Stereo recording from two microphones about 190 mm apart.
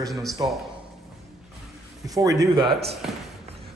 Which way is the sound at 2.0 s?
20° right (ahead or behind).